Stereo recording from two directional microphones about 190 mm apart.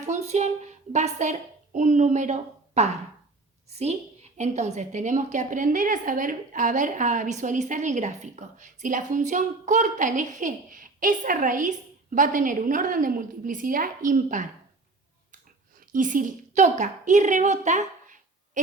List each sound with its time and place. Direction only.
0.0 s a woman's voice: 35° right (ahead or behind)
15.9 s a woman's voice: 45° right (ahead or behind)